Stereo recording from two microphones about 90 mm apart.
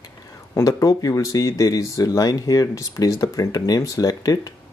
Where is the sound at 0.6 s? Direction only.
40° left (ahead or behind).